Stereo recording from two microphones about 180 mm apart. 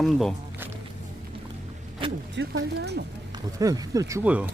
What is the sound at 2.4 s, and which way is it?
Speech, 70° right (ahead or behind).